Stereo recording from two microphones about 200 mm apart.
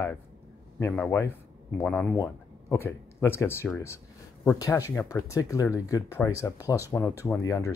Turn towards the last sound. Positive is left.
turn(degrees=15)  # may be behind; listen again after turning